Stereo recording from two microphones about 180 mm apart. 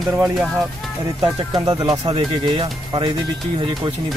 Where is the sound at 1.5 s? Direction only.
20° right (ahead or behind).